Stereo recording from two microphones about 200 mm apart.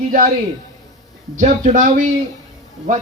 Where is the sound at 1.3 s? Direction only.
40° right (ahead or behind).